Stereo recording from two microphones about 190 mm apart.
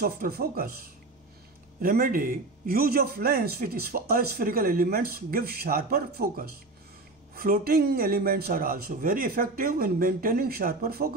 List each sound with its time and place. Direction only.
0.0 s a man's voice: 50° right (ahead or behind)
1.8 s a man's voice: 50° right (ahead or behind)